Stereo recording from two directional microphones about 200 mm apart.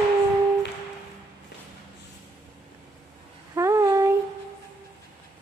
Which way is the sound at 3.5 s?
15° right (ahead or behind).